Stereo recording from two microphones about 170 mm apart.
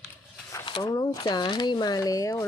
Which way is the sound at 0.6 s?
25° left (ahead or behind).